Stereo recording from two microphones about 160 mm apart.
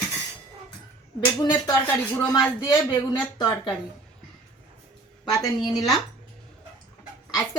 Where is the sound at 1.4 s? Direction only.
25° left (ahead or behind).